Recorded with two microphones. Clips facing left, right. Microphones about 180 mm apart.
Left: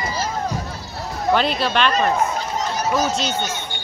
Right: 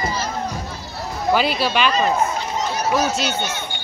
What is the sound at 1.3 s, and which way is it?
Speech, 5° right (ahead or behind).